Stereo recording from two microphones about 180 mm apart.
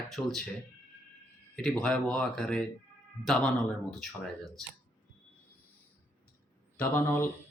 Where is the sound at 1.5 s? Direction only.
5° left (ahead or behind).